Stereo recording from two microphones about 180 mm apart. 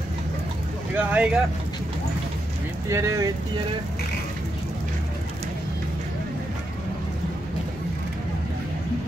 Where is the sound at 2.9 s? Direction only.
15° right (ahead or behind).